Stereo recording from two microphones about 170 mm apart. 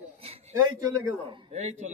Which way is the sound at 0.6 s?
20° right (ahead or behind).